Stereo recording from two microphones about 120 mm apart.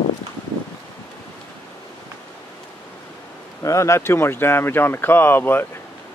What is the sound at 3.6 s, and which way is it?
Speech, 25° left (ahead or behind).